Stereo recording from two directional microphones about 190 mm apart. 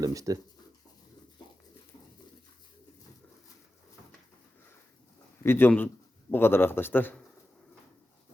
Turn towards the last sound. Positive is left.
turn(degrees=10)  # may be behind; listen again after turning